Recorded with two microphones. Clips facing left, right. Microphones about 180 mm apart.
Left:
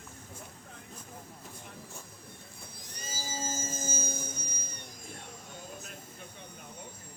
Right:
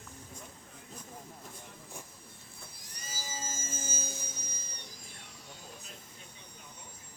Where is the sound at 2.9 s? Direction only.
25° left (ahead or behind); by 4.7 s 50° left (ahead or behind).